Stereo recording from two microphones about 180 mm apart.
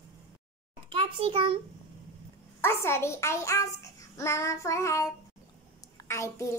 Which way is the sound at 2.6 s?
15° left (ahead or behind).